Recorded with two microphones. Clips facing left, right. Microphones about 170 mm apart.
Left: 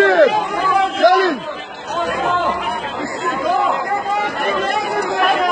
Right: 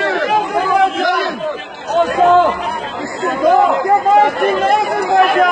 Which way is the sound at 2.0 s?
45° right (ahead or behind).